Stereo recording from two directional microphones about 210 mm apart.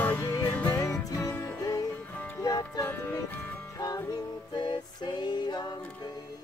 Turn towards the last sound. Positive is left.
turn(degrees=20)  # may be behind; listen again after turning